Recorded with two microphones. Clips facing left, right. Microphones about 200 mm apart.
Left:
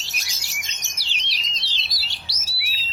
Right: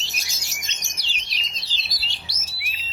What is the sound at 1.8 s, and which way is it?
Chirp, centre (ahead or behind).